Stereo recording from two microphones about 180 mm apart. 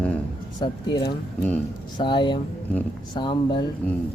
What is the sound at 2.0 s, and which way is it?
Speech, 25° left (ahead or behind).